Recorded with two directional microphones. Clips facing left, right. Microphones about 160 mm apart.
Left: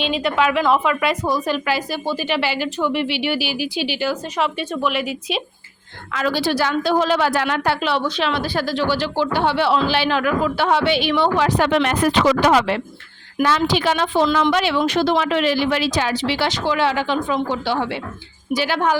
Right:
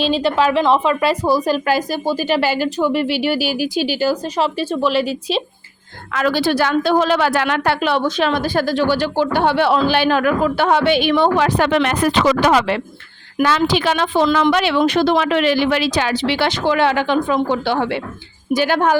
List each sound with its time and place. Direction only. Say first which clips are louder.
0.0 s a woman's voice: right 3 dB; 30° right (ahead or behind)
6.1 s a woman's voice: right 3 dB; 60° right (ahead or behind)
14.3 s a woman's voice: right 2 dB; 60° right (ahead or behind)